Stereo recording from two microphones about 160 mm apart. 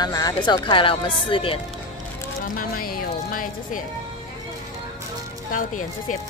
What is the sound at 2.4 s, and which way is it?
Speech, 60° left (ahead or behind).